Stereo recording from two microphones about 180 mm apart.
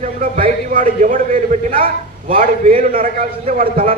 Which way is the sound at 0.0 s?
50° right (ahead or behind).